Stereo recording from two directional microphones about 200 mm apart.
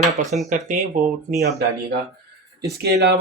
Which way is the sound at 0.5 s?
40° right (ahead or behind).